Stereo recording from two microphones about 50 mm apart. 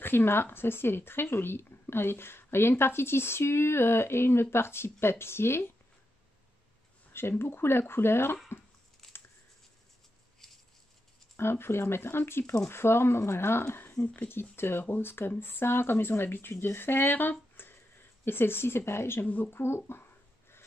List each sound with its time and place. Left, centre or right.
0.0 s speech: left
7.1 s speech: left
9.0 s a sound: centre
11.3 s speech: left
14.0 s speech: left
14.3 s speech: left
19.2 s speech: left
19.5 s speech: left